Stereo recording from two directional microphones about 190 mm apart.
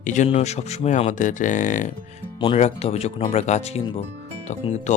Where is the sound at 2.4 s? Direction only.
30° left (ahead or behind).